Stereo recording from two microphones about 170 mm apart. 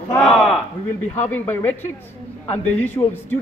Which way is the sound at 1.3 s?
10° left (ahead or behind).